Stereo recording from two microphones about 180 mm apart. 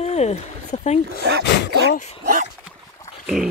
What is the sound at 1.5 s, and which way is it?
Speech, 75° left (ahead or behind).